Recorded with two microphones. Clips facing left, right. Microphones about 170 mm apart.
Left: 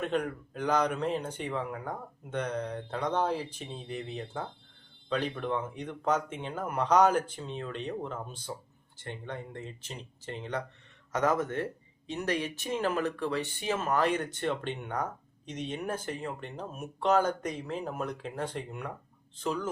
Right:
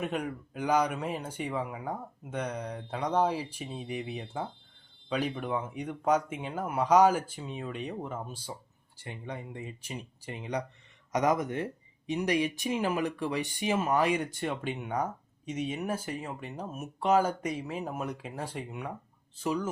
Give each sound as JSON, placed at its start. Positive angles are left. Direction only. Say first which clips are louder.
{"t": 0.0, "sound": "speech", "louder": "left 2 dB", "side_deg": -10}